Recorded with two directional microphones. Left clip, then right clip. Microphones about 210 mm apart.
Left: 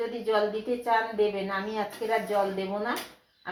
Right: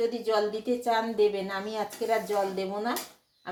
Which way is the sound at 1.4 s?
40° right (ahead or behind).